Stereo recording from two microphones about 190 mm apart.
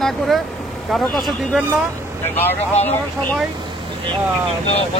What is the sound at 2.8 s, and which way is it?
Speech, 10° left (ahead or behind).